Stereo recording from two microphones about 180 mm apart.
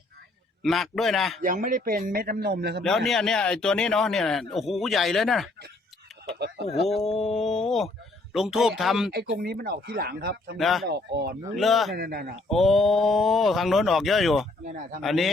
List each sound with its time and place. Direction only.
0.6 s speech: centre (ahead or behind)
1.4 s a man's voice: 45° right (ahead or behind); by 2.8 s 65° right (ahead or behind)
2.8 s speech: centre (ahead or behind)
6.8 s speech: centre (ahead or behind)
9.1 s speech: 60° right (ahead or behind)
10.6 s speech: centre (ahead or behind)
10.8 s speech: 65° right (ahead or behind)
11.5 s speech: centre (ahead or behind)
11.9 s speech: 60° right (ahead or behind)
12.5 s speech: centre (ahead or behind)